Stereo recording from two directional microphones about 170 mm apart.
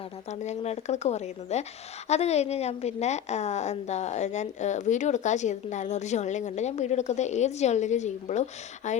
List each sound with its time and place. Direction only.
0.3 s a woman's voice: 40° left (ahead or behind)